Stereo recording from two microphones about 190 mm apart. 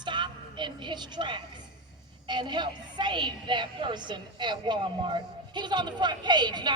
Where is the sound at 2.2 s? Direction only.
25° right (ahead or behind).